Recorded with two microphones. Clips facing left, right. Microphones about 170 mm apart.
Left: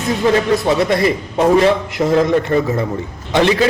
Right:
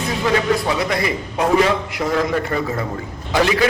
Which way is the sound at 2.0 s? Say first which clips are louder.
Left 7 dB; 25° left (ahead or behind).